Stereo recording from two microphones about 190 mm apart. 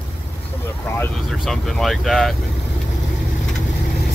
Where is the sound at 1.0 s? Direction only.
Centre (ahead or behind).